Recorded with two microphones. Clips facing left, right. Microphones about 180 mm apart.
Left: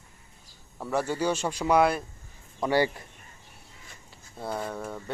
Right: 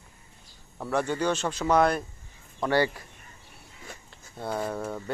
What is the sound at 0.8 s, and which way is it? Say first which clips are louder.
A man's voice: right 1 dB; 5° left (ahead or behind).